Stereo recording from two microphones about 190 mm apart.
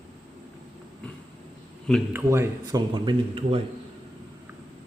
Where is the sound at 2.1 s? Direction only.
15° right (ahead or behind); by 3.6 s 30° right (ahead or behind).